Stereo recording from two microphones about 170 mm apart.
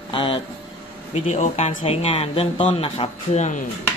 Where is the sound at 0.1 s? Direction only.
30° left (ahead or behind).